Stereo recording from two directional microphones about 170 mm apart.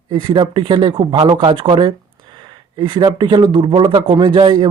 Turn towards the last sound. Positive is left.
turn(degrees=-25)  # may be behind; listen again after turning